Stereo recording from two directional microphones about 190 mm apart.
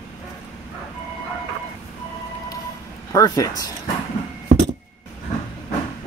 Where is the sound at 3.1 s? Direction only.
15° left (ahead or behind).